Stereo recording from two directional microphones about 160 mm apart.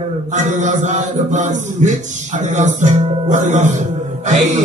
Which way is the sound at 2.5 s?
50° right (ahead or behind).